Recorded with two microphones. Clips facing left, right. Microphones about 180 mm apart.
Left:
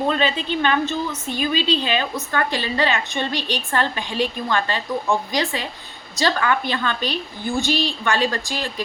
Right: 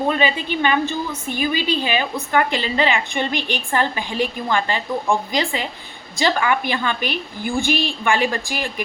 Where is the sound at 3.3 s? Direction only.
20° left (ahead or behind).